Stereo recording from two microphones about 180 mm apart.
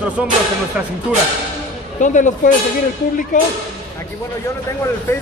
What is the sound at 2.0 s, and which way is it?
Speech, 45° left (ahead or behind).